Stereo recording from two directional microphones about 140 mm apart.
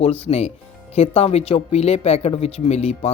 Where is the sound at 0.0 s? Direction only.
45° left (ahead or behind).